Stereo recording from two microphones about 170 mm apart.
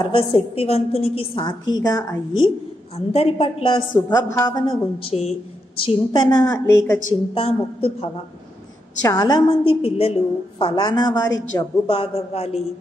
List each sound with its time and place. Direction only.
0.0 s a woman's voice: 30° left (ahead or behind)
3.1 s a woman's voice: 35° left (ahead or behind); by 7.0 s 15° left (ahead or behind)
7.3 s a woman's voice: 35° left (ahead or behind)
9.0 s a woman's voice: 20° left (ahead or behind)
11.9 s a woman's voice: 35° left (ahead or behind)